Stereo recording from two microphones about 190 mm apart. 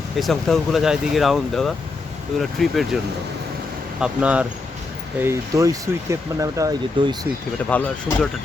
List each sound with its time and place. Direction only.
0.2 s speech: centre (ahead or behind)
4.0 s speech: 5° right (ahead or behind)
7.7 s speech: 10° left (ahead or behind)